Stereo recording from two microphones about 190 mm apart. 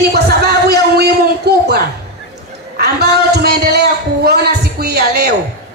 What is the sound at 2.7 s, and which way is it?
A man's voice, 55° right (ahead or behind).